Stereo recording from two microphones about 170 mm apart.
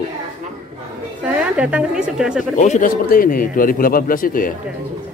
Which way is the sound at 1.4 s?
5° right (ahead or behind).